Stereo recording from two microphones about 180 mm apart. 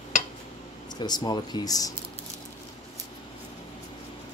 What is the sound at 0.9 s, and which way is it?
Speech, 25° left (ahead or behind).